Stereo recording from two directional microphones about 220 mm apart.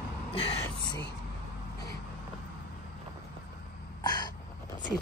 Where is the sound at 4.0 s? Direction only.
20° left (ahead or behind).